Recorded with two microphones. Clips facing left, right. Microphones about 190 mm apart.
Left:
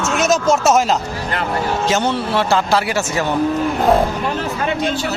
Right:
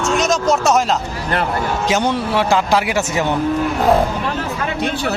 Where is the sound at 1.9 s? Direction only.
15° right (ahead or behind).